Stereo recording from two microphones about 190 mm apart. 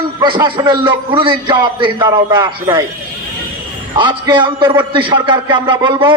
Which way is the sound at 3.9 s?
25° right (ahead or behind).